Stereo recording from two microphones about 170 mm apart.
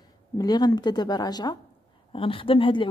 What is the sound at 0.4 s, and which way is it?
Speech, 25° left (ahead or behind).